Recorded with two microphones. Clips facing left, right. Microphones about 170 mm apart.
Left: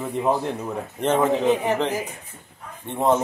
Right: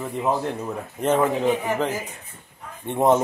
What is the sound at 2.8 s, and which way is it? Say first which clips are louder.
Speech: right 2 dB; 15° right (ahead or behind).